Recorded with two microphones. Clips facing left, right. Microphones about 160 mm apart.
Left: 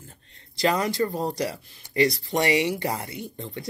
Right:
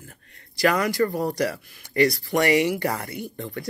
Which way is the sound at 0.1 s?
25° left (ahead or behind).